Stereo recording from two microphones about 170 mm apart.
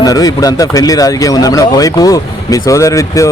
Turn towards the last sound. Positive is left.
turn(degrees=20)  # may be behind; listen again after turning